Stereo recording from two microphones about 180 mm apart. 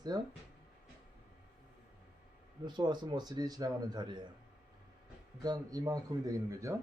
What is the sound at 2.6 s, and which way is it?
A man's voice, 25° right (ahead or behind).